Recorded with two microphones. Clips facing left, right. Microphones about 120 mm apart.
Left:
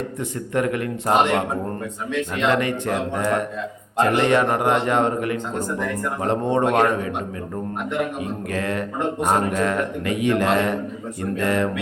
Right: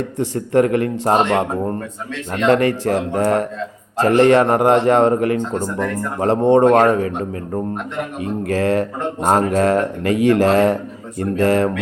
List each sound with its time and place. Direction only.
0.2 s speech: 35° right (ahead or behind)
2.5 s speech: 35° right (ahead or behind)
8.4 s speech: 35° right (ahead or behind)